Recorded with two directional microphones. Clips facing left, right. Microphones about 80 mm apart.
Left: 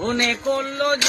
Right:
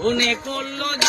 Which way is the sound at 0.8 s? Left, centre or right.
Left.